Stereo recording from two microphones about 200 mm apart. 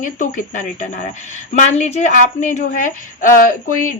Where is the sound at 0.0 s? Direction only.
40° left (ahead or behind).